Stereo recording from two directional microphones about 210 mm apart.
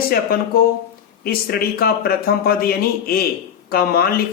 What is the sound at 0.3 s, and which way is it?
Speech, 45° left (ahead or behind).